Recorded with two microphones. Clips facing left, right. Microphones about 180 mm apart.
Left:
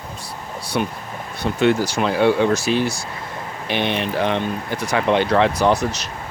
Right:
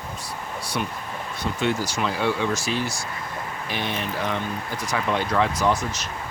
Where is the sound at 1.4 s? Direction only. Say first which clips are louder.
Left 7 dB; 65° left (ahead or behind).